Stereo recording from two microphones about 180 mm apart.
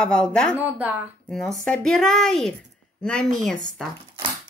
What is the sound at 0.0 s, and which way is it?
Speech, 5° left (ahead or behind).